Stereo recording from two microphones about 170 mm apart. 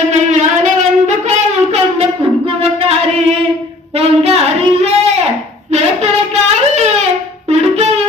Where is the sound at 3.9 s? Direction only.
35° right (ahead or behind).